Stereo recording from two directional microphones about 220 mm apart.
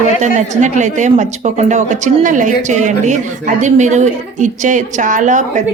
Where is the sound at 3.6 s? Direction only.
35° right (ahead or behind).